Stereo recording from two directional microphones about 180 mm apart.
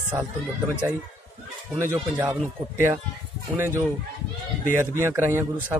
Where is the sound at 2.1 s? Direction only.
10° right (ahead or behind).